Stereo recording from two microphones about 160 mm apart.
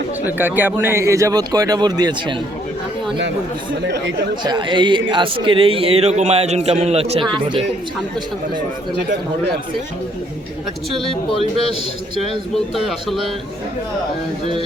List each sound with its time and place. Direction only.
0.3 s speech: 10° right (ahead or behind)
4.4 s speech: 30° right (ahead or behind)
12.5 s speech: centre (ahead or behind)